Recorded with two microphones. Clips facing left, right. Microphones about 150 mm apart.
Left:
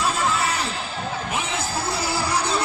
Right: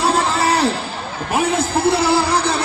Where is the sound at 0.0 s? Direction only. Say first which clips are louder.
Right 6 dB; 75° right (ahead or behind).